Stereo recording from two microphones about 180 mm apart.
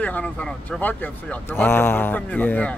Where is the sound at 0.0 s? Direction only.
10° left (ahead or behind).